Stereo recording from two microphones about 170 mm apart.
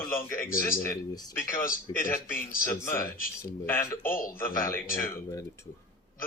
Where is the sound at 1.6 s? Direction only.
55° left (ahead or behind).